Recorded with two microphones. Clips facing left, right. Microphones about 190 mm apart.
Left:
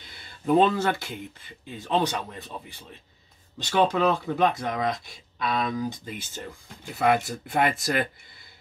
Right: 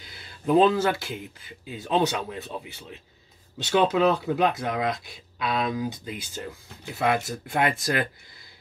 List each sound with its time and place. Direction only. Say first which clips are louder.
0.0 s speech: right 1 dB; centre (ahead or behind)